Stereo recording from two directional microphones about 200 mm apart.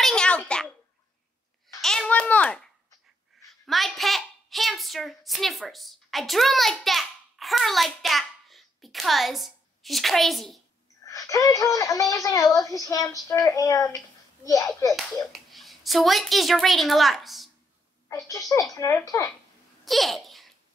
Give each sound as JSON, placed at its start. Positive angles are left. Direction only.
{"t": 0.0, "sound": "a sound", "side_deg": 5}
{"t": 1.8, "sound": "a sound", "side_deg": 5}
{"t": 11.1, "sound": "speech", "side_deg": 15}
{"t": 15.3, "sound": "a woman's voice", "side_deg": 0}
{"t": 18.0, "sound": "speech", "side_deg": 15}
{"t": 19.8, "sound": "babbling", "side_deg": 0}